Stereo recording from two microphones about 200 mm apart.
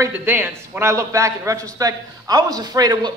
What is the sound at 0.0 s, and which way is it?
A man's voice, 10° right (ahead or behind).